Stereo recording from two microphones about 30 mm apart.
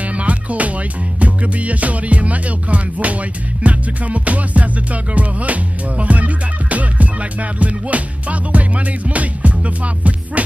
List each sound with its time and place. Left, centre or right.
0.0 s music: right